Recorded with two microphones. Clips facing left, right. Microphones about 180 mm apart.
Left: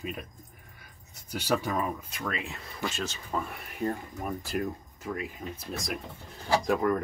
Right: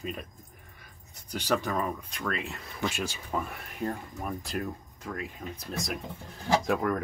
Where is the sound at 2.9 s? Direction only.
10° right (ahead or behind).